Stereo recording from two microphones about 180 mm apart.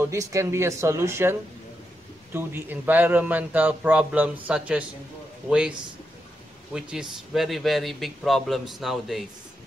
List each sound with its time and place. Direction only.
0.0 s a man's voice: 15° right (ahead or behind); by 9.2 s centre (ahead or behind)